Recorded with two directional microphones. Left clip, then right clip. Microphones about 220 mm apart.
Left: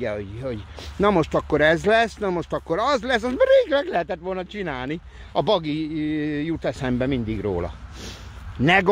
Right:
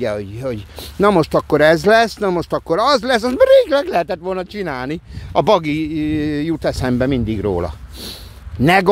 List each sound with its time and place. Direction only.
0.0 s speech: 35° right (ahead or behind)